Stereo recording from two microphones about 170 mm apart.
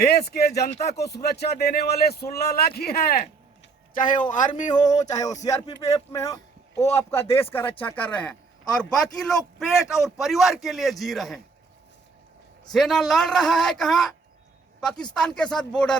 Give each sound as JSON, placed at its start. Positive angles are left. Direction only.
{"t": 0.0, "sound": "a man's voice", "side_deg": 70}
{"t": 5.0, "sound": "music", "side_deg": 20}
{"t": 5.3, "sound": "a man's voice", "side_deg": 45}
{"t": 6.1, "sound": "a man's voice", "side_deg": 20}
{"t": 12.7, "sound": "a man's voice", "side_deg": 0}